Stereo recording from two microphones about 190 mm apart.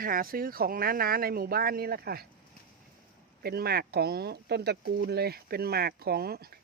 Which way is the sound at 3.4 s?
55° right (ahead or behind).